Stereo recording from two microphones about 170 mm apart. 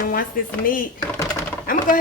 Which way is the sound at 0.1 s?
55° left (ahead or behind).